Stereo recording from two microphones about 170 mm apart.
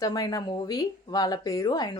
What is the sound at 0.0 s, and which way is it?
Speech, 25° left (ahead or behind).